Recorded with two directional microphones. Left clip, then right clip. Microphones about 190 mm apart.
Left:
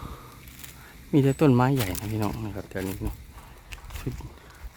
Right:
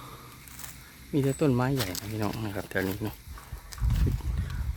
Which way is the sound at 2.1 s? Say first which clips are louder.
Even; 10° left (ahead or behind).